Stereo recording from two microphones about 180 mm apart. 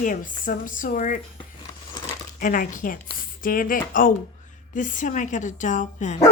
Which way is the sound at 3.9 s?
50° left (ahead or behind).